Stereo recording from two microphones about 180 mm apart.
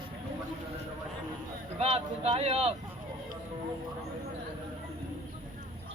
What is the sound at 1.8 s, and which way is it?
Speech, 35° right (ahead or behind).